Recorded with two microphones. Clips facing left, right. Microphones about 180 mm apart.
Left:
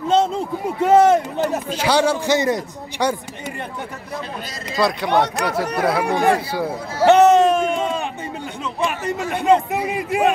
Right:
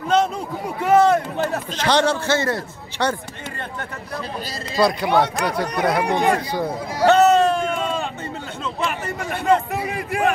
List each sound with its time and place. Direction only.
0.1 s a man's voice: 25° left (ahead or behind)
4.7 s speech: centre (ahead or behind)
6.0 s speech: 20° right (ahead or behind)
6.3 s a man's voice: 10° left (ahead or behind)
7.1 s a sound: 15° left (ahead or behind)